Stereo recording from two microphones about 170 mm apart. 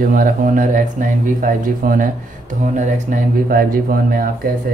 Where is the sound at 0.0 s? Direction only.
55° right (ahead or behind).